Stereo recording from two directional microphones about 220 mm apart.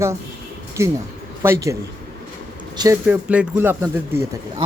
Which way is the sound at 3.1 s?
5° right (ahead or behind).